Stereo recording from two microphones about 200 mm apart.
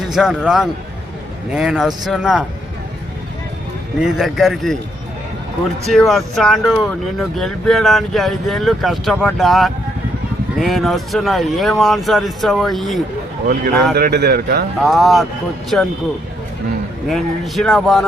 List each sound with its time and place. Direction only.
0.1 s speech: centre (ahead or behind)
4.0 s speech: centre (ahead or behind)
5.8 s speech: centre (ahead or behind)
13.5 s speech: 50° right (ahead or behind)
14.8 s speech: centre (ahead or behind)
17.1 s speech: centre (ahead or behind)